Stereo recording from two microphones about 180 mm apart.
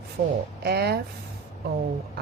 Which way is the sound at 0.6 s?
60° right (ahead or behind).